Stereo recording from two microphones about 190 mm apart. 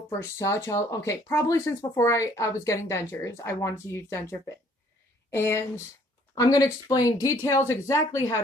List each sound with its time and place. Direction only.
0.4 s speech: 15° left (ahead or behind)